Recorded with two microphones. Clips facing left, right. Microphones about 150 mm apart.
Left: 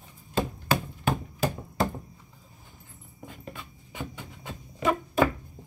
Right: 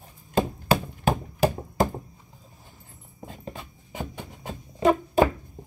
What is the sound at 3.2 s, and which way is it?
Dog, 25° right (ahead or behind).